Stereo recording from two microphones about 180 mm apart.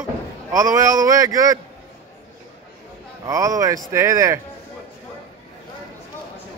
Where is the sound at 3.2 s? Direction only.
20° right (ahead or behind).